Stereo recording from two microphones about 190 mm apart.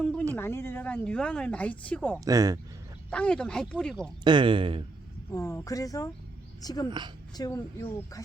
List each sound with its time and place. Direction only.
0.0 s speech: 5° left (ahead or behind)
2.2 s speech: 20° right (ahead or behind)
3.1 s speech: 5° left (ahead or behind)
4.2 s speech: 25° right (ahead or behind)
5.3 s speech: 15° left (ahead or behind)